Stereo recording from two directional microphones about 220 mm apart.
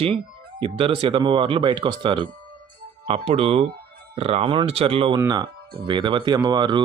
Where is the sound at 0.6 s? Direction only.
25° right (ahead or behind).